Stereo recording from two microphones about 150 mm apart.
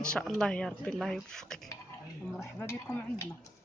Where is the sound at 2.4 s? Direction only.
15° left (ahead or behind).